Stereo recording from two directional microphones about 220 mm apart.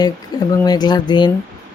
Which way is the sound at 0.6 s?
20° left (ahead or behind).